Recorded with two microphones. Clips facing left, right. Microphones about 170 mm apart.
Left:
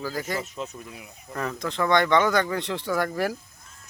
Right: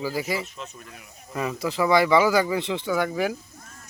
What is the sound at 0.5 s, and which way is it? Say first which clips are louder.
Speech: left 5 dB; 15° left (ahead or behind).